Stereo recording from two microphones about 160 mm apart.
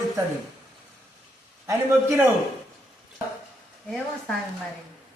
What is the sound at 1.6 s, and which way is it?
Speech, 15° right (ahead or behind).